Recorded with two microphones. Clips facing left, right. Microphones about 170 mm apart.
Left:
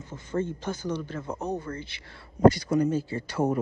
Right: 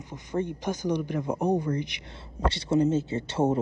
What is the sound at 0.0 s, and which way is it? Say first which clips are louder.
Speech: even; 15° right (ahead or behind).